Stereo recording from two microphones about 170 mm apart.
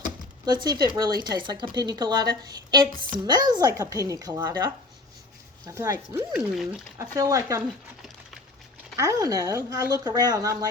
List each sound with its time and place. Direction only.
0.4 s speech: 25° right (ahead or behind)
6.5 s speech: centre (ahead or behind)
7.0 s speech: 20° right (ahead or behind)
9.0 s speech: 20° right (ahead or behind)